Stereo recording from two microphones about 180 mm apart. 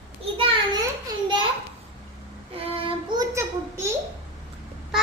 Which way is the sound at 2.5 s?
30° right (ahead or behind).